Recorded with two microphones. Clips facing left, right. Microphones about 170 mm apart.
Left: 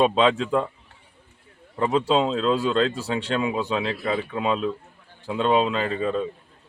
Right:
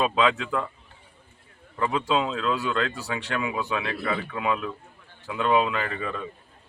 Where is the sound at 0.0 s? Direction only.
30° left (ahead or behind).